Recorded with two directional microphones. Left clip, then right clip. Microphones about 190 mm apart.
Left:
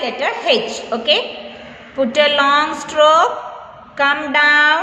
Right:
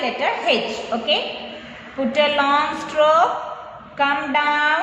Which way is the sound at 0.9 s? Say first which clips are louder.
Left 3 dB; 35° left (ahead or behind).